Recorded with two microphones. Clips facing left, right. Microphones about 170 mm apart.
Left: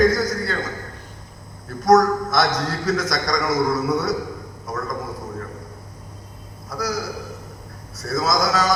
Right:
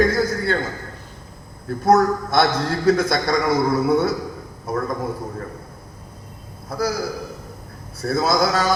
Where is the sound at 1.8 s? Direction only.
30° right (ahead or behind).